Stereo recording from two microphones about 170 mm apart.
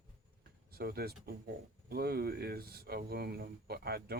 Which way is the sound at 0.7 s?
65° right (ahead or behind).